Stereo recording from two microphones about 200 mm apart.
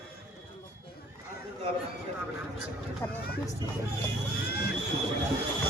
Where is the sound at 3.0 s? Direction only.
10° left (ahead or behind).